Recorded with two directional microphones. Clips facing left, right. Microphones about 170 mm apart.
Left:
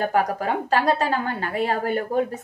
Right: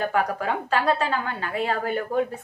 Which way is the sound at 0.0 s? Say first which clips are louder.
Left 2 dB; 40° left (ahead or behind).